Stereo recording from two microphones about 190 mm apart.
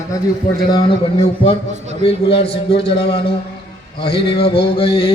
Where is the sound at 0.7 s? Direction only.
25° left (ahead or behind).